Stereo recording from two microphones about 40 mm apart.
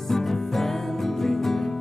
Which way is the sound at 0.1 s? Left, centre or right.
Centre.